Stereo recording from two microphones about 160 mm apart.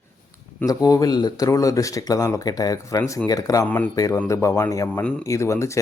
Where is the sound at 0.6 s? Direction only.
25° left (ahead or behind).